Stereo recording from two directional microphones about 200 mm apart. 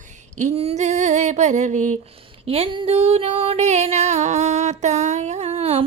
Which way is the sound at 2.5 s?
25° right (ahead or behind).